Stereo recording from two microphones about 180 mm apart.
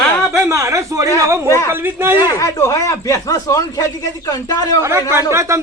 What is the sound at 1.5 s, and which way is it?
Speech, 15° left (ahead or behind).